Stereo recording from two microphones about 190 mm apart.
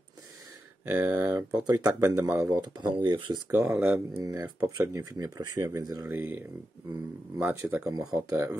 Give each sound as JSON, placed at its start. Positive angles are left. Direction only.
{"t": 0.9, "sound": "speech", "side_deg": -15}
{"t": 3.4, "sound": "speech", "side_deg": -15}
{"t": 7.3, "sound": "speech", "side_deg": -10}